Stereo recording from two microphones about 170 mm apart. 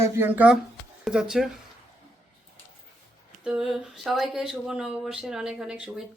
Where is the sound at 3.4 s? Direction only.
5° right (ahead or behind).